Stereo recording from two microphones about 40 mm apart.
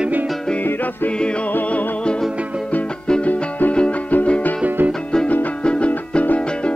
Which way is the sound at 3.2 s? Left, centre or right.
Left.